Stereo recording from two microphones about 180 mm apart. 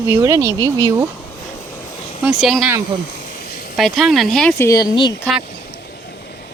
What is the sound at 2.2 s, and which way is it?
Speech, centre (ahead or behind).